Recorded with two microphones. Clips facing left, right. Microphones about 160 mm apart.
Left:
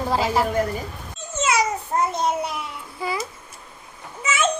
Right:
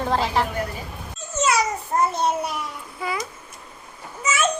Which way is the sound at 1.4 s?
20° left (ahead or behind).